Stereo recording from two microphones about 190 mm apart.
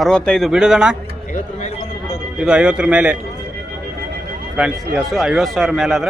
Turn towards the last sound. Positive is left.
turn(degrees=0)  # may be behind; listen again after turning